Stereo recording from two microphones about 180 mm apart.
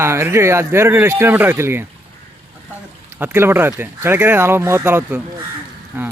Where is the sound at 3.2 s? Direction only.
10° right (ahead or behind).